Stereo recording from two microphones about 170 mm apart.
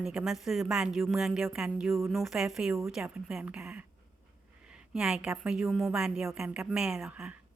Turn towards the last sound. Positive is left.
turn(degrees=-5)  # may be behind; listen again after turning